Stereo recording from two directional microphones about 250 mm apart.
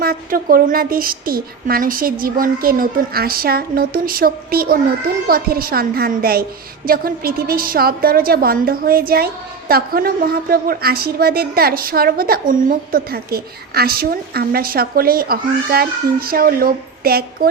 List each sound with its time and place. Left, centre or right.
0.0 s a woman's voice: right